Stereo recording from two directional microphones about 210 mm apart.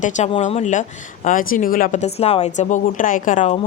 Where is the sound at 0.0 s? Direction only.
35° left (ahead or behind).